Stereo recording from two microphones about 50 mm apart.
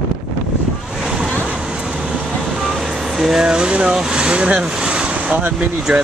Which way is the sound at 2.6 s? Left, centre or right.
Centre.